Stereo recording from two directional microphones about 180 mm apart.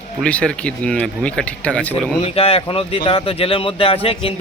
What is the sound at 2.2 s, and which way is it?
Speech, 35° left (ahead or behind).